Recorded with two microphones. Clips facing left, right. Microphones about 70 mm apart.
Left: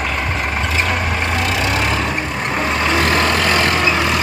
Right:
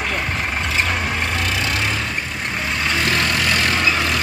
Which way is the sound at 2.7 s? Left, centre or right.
Left.